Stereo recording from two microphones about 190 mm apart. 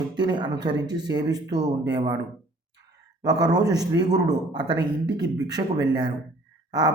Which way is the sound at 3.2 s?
20° right (ahead or behind).